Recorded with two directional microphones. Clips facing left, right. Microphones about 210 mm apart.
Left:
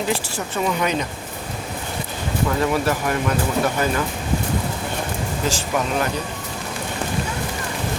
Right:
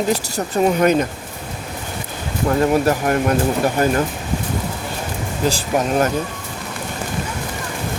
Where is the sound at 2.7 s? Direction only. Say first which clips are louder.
Right 5 dB; 45° right (ahead or behind).